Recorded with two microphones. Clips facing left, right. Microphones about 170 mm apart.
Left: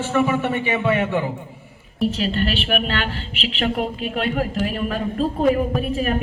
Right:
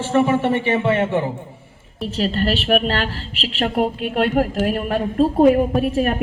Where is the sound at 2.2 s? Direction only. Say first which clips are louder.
Right 2 dB; 40° right (ahead or behind).